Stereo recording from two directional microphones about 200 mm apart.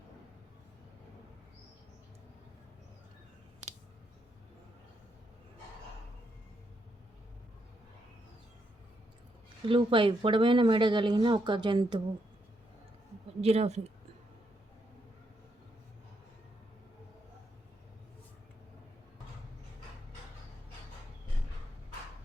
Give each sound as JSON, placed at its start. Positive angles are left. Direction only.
{"t": 9.6, "sound": "speech", "side_deg": -25}
{"t": 13.4, "sound": "speech", "side_deg": -30}